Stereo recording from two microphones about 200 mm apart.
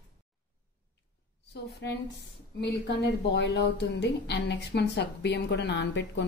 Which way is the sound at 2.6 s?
60° left (ahead or behind).